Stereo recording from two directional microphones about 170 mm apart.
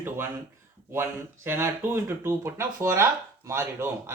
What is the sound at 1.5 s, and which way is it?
Speech, 15° right (ahead or behind).